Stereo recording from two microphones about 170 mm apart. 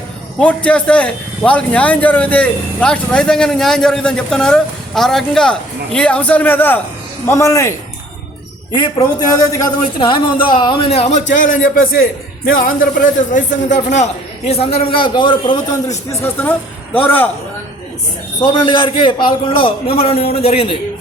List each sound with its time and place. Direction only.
0.3 s a man's voice: 5° left (ahead or behind)
8.8 s a man's voice: 25° left (ahead or behind)
11.3 s speech: 55° left (ahead or behind)
13.9 s a man's voice: 40° left (ahead or behind)
16.2 s a man's voice: 10° left (ahead or behind)
18.3 s a man's voice: 30° left (ahead or behind)